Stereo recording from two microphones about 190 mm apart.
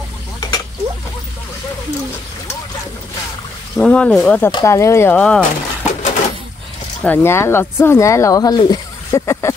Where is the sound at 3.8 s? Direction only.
5° left (ahead or behind).